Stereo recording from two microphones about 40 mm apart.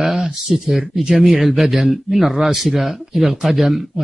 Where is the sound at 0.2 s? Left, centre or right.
Centre.